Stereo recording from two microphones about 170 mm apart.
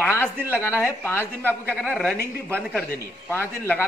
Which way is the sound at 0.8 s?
15° left (ahead or behind).